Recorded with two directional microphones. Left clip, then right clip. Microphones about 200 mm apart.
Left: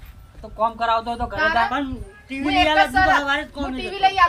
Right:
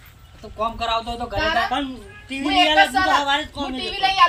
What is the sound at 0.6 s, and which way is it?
Speech, 10° left (ahead or behind).